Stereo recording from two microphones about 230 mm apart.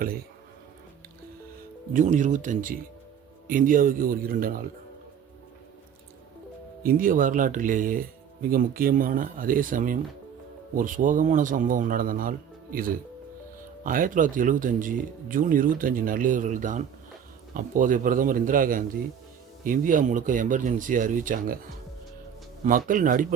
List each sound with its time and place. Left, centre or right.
1.9 s speech: right
6.8 s speech: right
13.8 s speech: right
22.6 s speech: right